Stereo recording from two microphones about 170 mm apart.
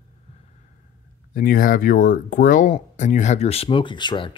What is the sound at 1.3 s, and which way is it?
Speech, 55° left (ahead or behind).